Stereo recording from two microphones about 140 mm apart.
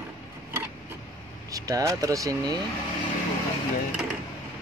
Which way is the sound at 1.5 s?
25° right (ahead or behind).